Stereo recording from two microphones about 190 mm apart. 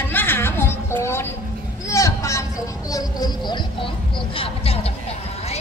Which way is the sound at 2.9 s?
20° left (ahead or behind).